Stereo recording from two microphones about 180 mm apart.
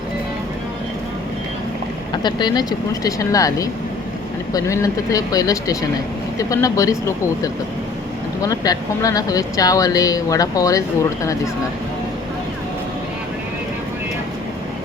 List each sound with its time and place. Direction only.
2.2 s speech: 25° left (ahead or behind)